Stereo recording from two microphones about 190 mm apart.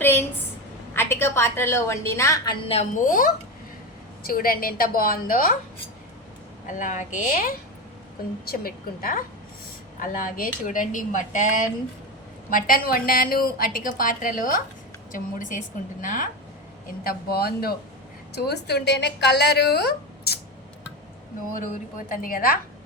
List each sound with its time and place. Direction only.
0.0 s a sound: 10° left (ahead or behind)
0.9 s a woman's voice: 10° left (ahead or behind); by 5.5 s 50° left (ahead or behind)
6.7 s a woman's voice: 40° left (ahead or behind); by 20.4 s 60° left (ahead or behind)
21.9 s a woman's voice: 45° left (ahead or behind)